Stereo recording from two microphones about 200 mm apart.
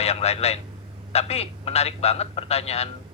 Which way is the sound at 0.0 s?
30° left (ahead or behind).